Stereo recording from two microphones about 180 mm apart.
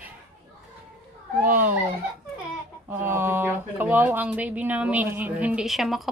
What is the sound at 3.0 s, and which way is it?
Speech, 15° right (ahead or behind).